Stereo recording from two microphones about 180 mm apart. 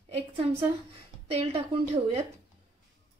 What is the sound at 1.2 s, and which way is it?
Speech, 30° right (ahead or behind).